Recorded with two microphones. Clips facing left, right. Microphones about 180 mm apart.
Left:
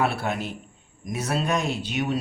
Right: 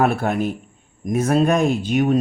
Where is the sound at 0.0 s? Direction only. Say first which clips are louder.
Right 7 dB; 50° right (ahead or behind).